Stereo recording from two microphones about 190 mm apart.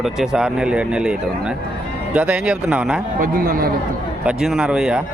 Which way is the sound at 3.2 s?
50° right (ahead or behind).